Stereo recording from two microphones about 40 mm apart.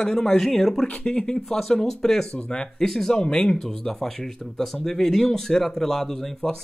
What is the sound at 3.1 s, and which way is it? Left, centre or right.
Speech, left.